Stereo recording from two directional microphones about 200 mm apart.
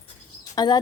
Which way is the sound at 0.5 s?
20° left (ahead or behind).